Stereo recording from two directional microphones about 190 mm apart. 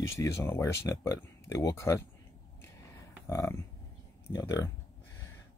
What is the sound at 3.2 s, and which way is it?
Speech, 15° left (ahead or behind).